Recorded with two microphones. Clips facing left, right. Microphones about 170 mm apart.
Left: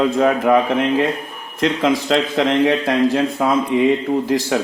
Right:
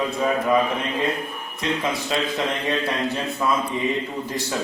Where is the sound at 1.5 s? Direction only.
90° left.